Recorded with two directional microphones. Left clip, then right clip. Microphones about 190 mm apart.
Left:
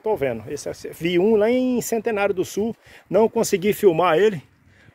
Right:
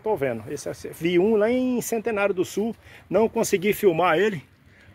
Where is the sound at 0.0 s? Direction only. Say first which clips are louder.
Left 2 dB; 30° left (ahead or behind).